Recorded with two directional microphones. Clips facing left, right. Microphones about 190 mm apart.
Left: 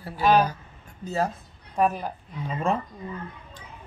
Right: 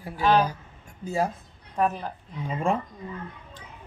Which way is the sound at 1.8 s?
10° left (ahead or behind).